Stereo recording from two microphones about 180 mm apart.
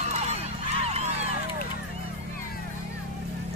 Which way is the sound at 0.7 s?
35° right (ahead or behind).